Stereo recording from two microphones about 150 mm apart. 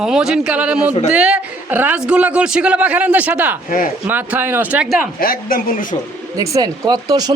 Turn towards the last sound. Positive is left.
turn(degrees=-25)  # may be behind; listen again after turning